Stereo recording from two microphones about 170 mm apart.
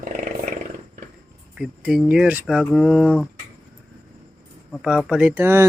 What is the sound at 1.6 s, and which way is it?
Speech, 5° right (ahead or behind).